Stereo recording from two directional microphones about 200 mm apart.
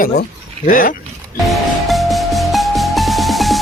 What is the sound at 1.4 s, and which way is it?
Music, centre (ahead or behind).